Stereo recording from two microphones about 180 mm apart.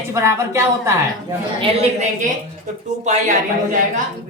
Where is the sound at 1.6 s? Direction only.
40° right (ahead or behind).